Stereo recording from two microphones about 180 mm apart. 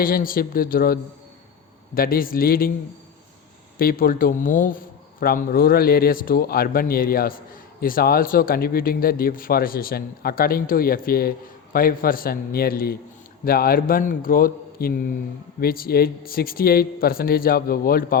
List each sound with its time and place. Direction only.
0.0 s speech: 55° left (ahead or behind)
2.0 s speech: 55° left (ahead or behind)
3.8 s a man's voice: 55° left (ahead or behind)